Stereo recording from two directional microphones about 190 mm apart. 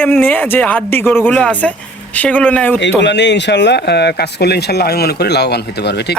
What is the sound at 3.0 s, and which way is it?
Speech, 65° left (ahead or behind).